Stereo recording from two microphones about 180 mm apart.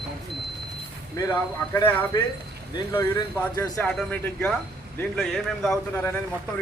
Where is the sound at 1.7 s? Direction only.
20° left (ahead or behind).